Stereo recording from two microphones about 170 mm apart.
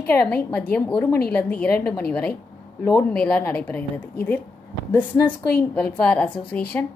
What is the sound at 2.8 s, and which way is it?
Speech, 15° left (ahead or behind).